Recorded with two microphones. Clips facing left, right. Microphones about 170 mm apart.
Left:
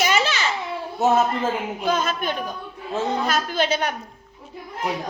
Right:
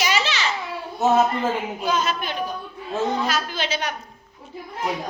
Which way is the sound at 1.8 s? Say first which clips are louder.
Left 2 dB; 50° left (ahead or behind).